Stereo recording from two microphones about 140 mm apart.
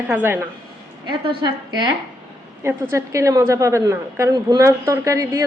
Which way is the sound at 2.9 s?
20° right (ahead or behind).